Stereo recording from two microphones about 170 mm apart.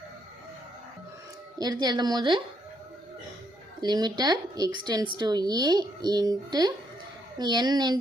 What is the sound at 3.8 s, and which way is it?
Speech, 25° right (ahead or behind).